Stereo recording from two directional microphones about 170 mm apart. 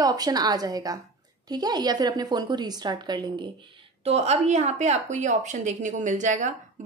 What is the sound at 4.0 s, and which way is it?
A woman's voice, 40° right (ahead or behind).